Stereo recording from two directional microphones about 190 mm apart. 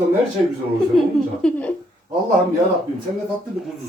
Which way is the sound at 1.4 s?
5° left (ahead or behind).